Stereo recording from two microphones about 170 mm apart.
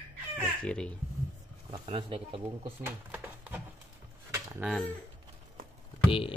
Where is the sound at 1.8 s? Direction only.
30° right (ahead or behind).